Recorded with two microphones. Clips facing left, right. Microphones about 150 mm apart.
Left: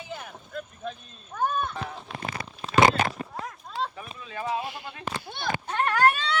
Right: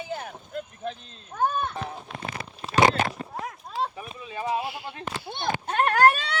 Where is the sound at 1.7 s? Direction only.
20° right (ahead or behind).